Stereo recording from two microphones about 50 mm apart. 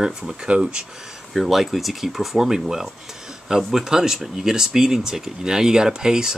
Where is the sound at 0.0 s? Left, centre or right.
Centre.